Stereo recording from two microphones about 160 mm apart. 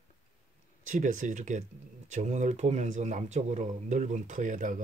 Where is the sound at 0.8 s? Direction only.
50° right (ahead or behind).